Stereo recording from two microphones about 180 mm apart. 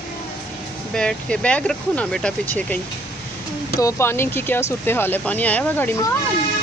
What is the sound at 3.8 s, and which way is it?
Speech, 15° left (ahead or behind).